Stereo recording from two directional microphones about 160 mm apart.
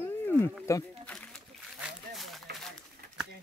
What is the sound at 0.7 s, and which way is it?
Speech, 20° left (ahead or behind).